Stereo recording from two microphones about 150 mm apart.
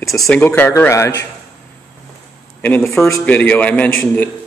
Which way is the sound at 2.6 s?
15° left (ahead or behind).